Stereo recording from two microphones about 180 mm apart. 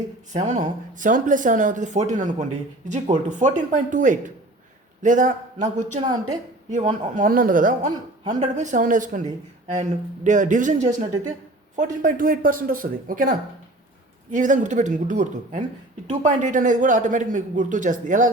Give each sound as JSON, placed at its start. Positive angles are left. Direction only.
{"t": 0.3, "sound": "a man's voice", "side_deg": -40}
{"t": 7.2, "sound": "a man's voice", "side_deg": -50}
{"t": 7.9, "sound": "a woman's voice", "side_deg": -25}
{"t": 8.4, "sound": "a man's voice", "side_deg": -40}
{"t": 14.3, "sound": "a man's voice", "side_deg": -45}